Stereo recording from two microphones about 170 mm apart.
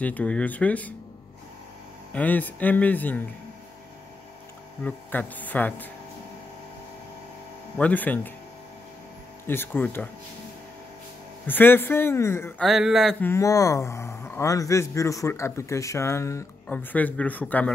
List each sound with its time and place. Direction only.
0.0 s speech: 10° left (ahead or behind)
2.1 s speech: 10° left (ahead or behind)
4.8 s speech: 10° left (ahead or behind)
7.7 s speech: 10° left (ahead or behind)
9.5 s speech: 10° left (ahead or behind)
11.4 s speech: 10° left (ahead or behind)
12.6 s speech: centre (ahead or behind)
13.2 s speech: 15° left (ahead or behind)